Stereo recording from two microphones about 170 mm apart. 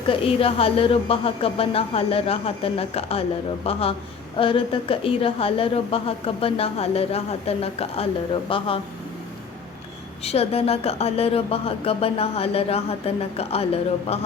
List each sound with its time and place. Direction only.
0.1 s speech: 35° left (ahead or behind)
10.2 s speech: 35° left (ahead or behind)